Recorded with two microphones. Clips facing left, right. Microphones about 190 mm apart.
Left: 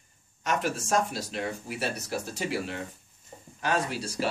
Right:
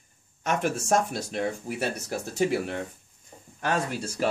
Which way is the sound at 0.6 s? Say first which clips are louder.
Right 4 dB; 50° right (ahead or behind).